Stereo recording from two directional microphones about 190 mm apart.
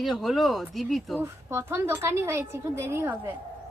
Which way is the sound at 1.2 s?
15° right (ahead or behind).